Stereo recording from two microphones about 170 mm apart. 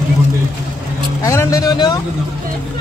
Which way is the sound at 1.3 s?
20° left (ahead or behind).